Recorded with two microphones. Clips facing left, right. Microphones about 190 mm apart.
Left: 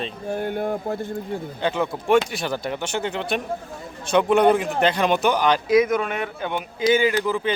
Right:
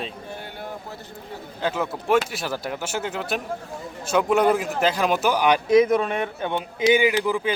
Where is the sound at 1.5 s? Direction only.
5° right (ahead or behind).